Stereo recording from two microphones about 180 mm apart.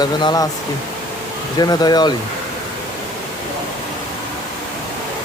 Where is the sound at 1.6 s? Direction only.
25° left (ahead or behind).